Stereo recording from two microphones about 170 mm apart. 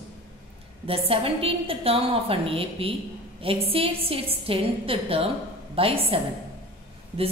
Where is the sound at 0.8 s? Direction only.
35° right (ahead or behind).